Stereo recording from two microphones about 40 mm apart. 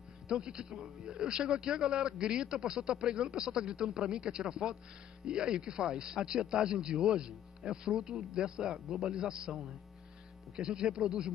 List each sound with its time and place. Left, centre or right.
0.3 s speech: right
9.1 s speech: right